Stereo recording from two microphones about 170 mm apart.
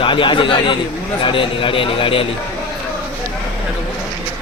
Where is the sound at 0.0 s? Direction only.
30° left (ahead or behind).